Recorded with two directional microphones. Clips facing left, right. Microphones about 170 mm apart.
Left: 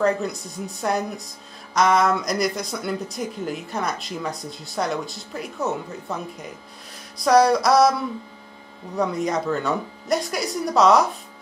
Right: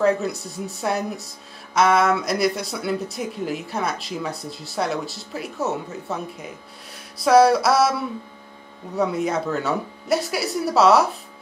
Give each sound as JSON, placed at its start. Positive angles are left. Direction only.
{"t": 0.0, "sound": "speech", "side_deg": -5}
{"t": 7.2, "sound": "speech", "side_deg": -5}
{"t": 8.9, "sound": "speech", "side_deg": -5}